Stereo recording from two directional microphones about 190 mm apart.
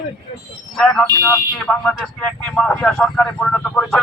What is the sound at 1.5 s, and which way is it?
Speech, centre (ahead or behind).